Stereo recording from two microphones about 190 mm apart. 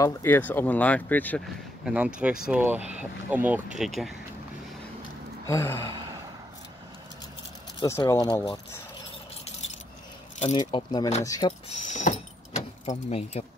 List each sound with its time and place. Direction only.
0.0 s speech: 15° left (ahead or behind)
1.9 s speech: 5° right (ahead or behind)
5.5 s speech: 15° left (ahead or behind)
7.8 s speech: 15° left (ahead or behind)
10.4 s speech: 35° left (ahead or behind)
10.7 s speech: 20° left (ahead or behind)
11.8 s vehicle: 40° left (ahead or behind)
12.8 s speech: 35° left (ahead or behind)